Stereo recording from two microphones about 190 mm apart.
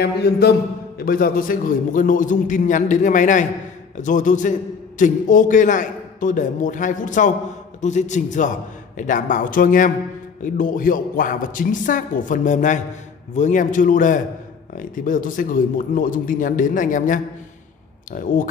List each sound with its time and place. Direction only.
0.0 s a man's voice: 55° left (ahead or behind)